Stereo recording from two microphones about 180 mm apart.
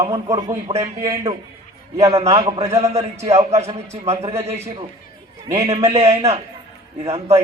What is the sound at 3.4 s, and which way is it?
Speech, 40° right (ahead or behind).